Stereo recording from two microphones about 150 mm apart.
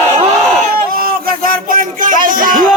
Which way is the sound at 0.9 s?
80° right.